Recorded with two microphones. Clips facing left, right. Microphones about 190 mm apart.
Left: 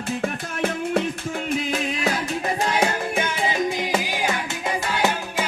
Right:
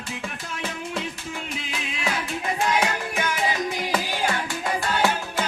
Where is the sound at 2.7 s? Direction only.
30° left (ahead or behind).